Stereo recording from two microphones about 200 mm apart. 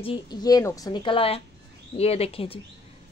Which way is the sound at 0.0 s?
20° left (ahead or behind).